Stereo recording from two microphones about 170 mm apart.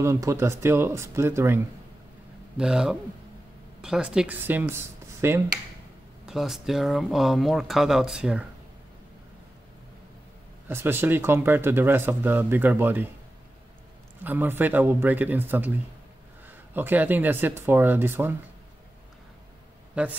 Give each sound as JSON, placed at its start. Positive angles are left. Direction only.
{"t": 0.0, "sound": "speech", "side_deg": -15}
{"t": 2.5, "sound": "speech", "side_deg": -5}
{"t": 6.2, "sound": "speech", "side_deg": 0}
{"t": 10.7, "sound": "speech", "side_deg": -15}
{"t": 14.2, "sound": "speech", "side_deg": -10}
{"t": 20.0, "sound": "speech", "side_deg": -10}